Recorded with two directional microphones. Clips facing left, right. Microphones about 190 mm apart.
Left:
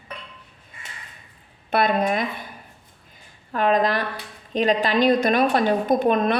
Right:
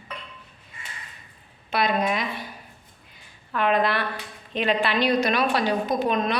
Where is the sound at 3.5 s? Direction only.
40° left (ahead or behind).